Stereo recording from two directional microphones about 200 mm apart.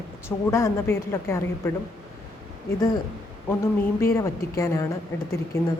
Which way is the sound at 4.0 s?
15° left (ahead or behind).